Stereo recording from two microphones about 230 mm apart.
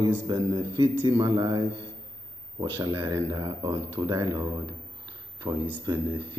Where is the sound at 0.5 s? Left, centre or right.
Right.